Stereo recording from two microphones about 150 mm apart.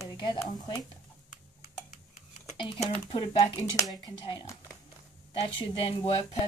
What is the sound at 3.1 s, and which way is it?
A woman's voice, 35° left (ahead or behind).